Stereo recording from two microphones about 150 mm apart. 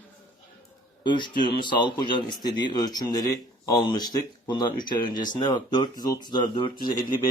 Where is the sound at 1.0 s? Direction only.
30° left (ahead or behind).